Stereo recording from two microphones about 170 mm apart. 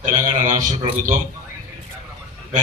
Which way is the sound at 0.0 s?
50° right (ahead or behind).